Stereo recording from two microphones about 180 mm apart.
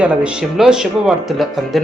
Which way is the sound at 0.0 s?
5° right (ahead or behind).